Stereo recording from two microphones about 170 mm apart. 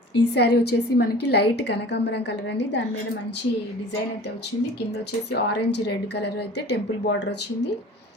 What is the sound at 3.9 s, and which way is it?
A woman's voice, 85° left.